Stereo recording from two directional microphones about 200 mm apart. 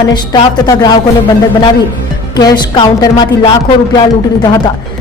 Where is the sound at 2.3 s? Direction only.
20° left (ahead or behind).